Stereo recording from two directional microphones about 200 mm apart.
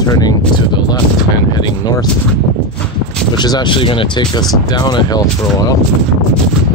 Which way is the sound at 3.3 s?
20° left (ahead or behind).